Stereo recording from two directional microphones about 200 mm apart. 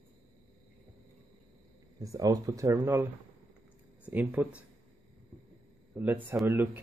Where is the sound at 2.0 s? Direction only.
15° right (ahead or behind).